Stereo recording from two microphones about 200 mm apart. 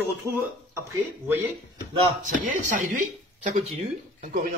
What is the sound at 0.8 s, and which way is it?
Speech, 10° right (ahead or behind).